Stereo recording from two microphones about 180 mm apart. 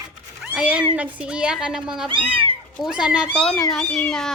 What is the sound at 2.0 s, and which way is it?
Speech, 30° right (ahead or behind).